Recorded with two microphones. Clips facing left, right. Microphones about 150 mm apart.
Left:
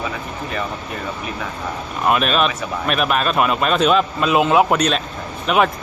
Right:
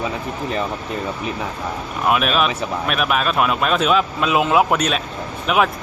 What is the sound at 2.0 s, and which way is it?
A man's voice, 5° right (ahead or behind).